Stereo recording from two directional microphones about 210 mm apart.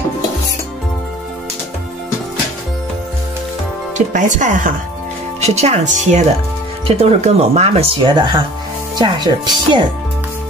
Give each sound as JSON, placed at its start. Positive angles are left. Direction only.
{"t": 4.1, "sound": "speech", "side_deg": -35}